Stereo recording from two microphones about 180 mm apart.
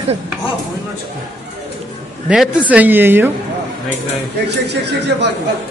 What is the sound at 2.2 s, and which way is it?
A woman's voice, 5° right (ahead or behind).